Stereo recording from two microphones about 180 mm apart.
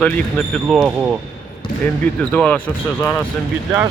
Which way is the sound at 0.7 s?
5° right (ahead or behind).